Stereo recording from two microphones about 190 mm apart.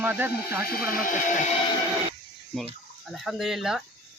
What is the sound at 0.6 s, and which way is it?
Speech, 50° left (ahead or behind).